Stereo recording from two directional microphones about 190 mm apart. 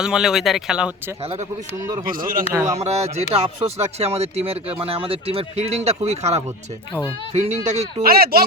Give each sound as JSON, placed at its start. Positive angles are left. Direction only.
{"t": 0.0, "sound": "speech", "side_deg": -5}
{"t": 1.2, "sound": "speech", "side_deg": -30}
{"t": 2.0, "sound": "speech", "side_deg": -50}
{"t": 2.5, "sound": "a man's voice", "side_deg": -15}
{"t": 2.7, "sound": "speech", "side_deg": -35}
{"t": 8.0, "sound": "speech", "side_deg": -50}